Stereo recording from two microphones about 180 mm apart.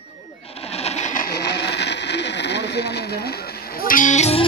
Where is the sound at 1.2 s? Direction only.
65° left (ahead or behind).